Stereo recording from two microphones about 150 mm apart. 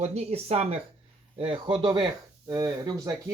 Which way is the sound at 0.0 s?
45° right (ahead or behind).